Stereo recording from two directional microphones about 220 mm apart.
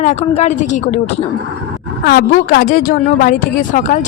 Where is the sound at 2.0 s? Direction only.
45° left (ahead or behind).